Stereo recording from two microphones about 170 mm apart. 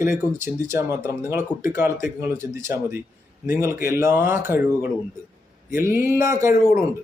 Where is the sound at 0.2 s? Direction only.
15° right (ahead or behind).